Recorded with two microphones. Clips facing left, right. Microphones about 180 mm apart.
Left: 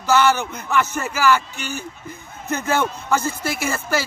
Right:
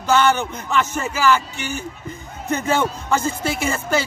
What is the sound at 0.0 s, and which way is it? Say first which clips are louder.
Speech: even; 5° left (ahead or behind).